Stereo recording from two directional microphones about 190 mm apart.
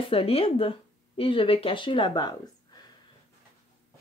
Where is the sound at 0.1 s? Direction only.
30° left (ahead or behind).